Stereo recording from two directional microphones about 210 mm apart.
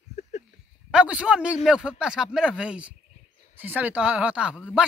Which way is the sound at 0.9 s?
5° right (ahead or behind).